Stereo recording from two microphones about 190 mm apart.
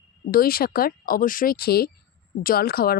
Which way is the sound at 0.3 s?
50° left (ahead or behind).